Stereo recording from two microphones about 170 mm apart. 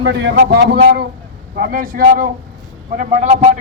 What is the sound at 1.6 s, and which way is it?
Speech, 60° right (ahead or behind).